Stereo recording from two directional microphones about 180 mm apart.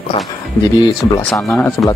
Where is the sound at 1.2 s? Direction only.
5° left (ahead or behind).